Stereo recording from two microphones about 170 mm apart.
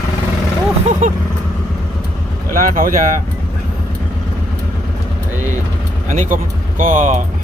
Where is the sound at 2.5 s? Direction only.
55° right (ahead or behind).